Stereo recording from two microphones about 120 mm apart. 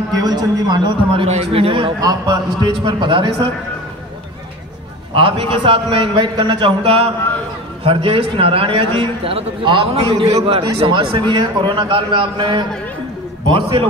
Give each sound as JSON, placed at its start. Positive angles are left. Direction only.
{"t": 0.1, "sound": "a man's voice", "side_deg": -35}
{"t": 1.2, "sound": "a man's voice", "side_deg": -55}
{"t": 2.0, "sound": "a man's voice", "side_deg": -35}
{"t": 5.1, "sound": "a man's voice", "side_deg": -45}
{"t": 6.8, "sound": "a man's voice", "side_deg": -55}
{"t": 10.9, "sound": "a man's voice", "side_deg": -40}